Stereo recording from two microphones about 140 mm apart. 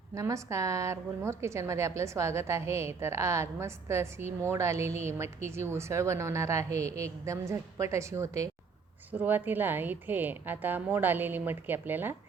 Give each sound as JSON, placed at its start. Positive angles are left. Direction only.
{"t": 0.1, "sound": "a woman's voice", "side_deg": -20}